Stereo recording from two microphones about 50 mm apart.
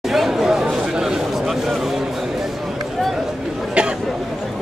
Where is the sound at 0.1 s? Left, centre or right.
Centre.